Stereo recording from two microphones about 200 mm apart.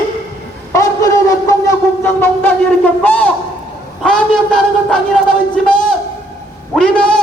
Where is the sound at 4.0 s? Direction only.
5° left (ahead or behind).